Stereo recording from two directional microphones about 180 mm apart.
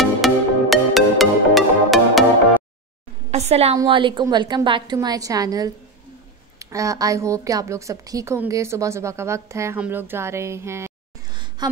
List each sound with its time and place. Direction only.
0.2 s music: centre (ahead or behind)
3.3 s a woman's voice: 35° right (ahead or behind)
3.7 s a woman's voice: 25° right (ahead or behind)
11.3 s a sound: 25° right (ahead or behind)